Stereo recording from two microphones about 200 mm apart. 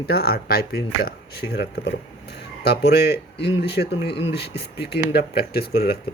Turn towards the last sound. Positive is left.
turn(degrees=50)  # may be behind; listen again after turning